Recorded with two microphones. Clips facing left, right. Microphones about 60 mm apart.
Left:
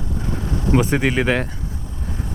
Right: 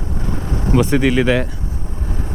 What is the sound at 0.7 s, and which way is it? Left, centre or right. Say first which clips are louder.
Speech: right 4 dB; centre.